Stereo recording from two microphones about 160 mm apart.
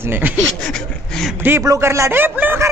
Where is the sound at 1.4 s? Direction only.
15° right (ahead or behind).